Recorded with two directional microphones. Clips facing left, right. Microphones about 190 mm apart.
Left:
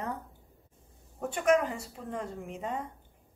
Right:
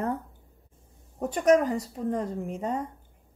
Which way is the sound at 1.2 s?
40° right (ahead or behind).